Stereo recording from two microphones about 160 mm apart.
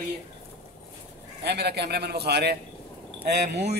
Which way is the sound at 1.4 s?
90° right.